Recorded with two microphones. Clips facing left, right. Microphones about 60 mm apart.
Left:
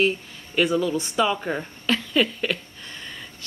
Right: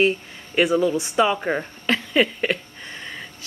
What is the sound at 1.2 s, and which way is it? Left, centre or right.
Speech, centre.